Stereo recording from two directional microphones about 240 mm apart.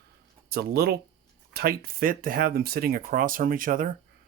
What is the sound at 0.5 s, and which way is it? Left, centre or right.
Speech, right.